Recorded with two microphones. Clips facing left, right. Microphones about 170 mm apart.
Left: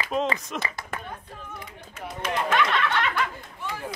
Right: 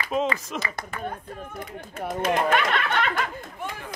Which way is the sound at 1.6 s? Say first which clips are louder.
Right 6 dB; 50° right (ahead or behind).